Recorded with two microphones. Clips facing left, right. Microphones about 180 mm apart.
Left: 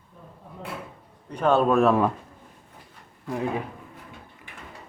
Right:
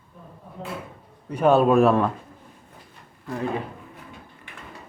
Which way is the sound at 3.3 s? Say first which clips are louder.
Even; 15° left (ahead or behind).